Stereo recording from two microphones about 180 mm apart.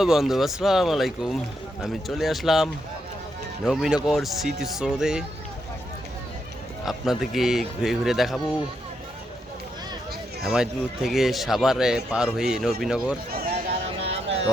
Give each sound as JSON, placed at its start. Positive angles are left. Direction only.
{"t": 0.0, "sound": "speech", "side_deg": 0}
{"t": 6.8, "sound": "speech", "side_deg": 0}
{"t": 10.4, "sound": "speech", "side_deg": -5}
{"t": 13.3, "sound": "a sound", "side_deg": -55}